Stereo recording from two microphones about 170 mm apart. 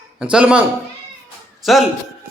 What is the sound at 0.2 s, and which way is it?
Speech, 5° right (ahead or behind).